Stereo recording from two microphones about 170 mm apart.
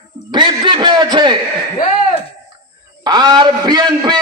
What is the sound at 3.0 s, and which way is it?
A man's voice, 25° right (ahead or behind).